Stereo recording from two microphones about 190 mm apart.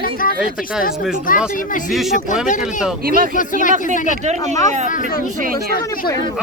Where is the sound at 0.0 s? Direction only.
50° left (ahead or behind).